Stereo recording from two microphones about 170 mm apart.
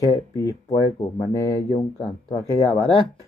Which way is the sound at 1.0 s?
35° left (ahead or behind).